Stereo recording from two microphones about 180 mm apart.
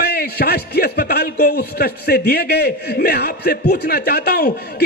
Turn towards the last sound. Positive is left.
turn(degrees=60)  # may be behind; listen again after turning